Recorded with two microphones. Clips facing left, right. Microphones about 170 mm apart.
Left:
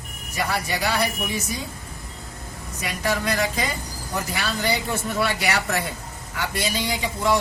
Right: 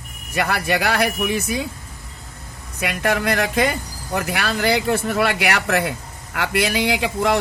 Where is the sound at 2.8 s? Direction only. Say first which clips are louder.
Right 4 dB; 65° right (ahead or behind).